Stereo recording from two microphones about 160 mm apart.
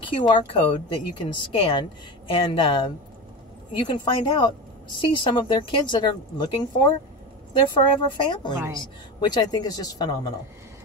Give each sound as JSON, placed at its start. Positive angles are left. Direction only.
{"t": 0.0, "sound": "speech", "side_deg": 30}
{"t": 8.5, "sound": "a woman's voice", "side_deg": -20}
{"t": 9.3, "sound": "speech", "side_deg": 25}